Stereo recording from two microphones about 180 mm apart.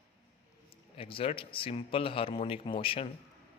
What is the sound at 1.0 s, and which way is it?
A man's voice, 30° left (ahead or behind).